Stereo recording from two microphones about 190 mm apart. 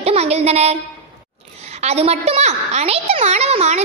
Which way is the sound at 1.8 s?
35° right (ahead or behind).